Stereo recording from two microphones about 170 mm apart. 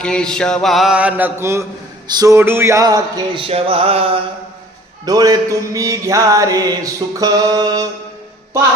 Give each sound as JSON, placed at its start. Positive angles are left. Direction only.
{"t": 0.0, "sound": "mantra", "side_deg": 5}
{"t": 2.1, "sound": "music", "side_deg": -20}
{"t": 5.0, "sound": "music", "side_deg": -20}